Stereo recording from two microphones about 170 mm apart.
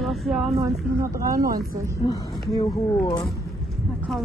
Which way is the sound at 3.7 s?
Centre (ahead or behind).